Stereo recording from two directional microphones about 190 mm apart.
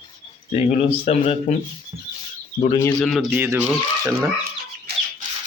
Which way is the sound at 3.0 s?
Centre (ahead or behind).